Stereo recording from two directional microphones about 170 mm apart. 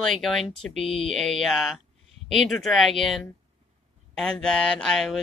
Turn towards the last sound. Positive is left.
turn(degrees=0)  # may be behind; listen again after turning